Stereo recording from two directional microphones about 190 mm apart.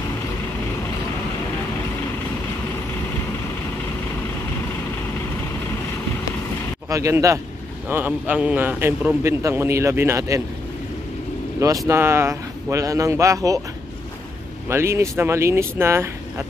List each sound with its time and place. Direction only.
6.9 s a man's voice: 15° right (ahead or behind)
11.9 s a man's voice: 15° right (ahead or behind)
14.7 s a man's voice: 15° right (ahead or behind)